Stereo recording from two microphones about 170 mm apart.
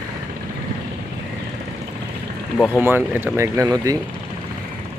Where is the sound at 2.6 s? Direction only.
10° right (ahead or behind).